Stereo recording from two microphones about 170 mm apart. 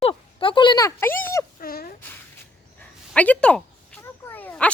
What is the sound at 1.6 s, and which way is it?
Speech, 60° left (ahead or behind).